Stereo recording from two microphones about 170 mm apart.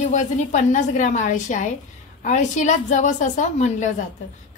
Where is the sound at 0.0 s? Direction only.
45° left (ahead or behind).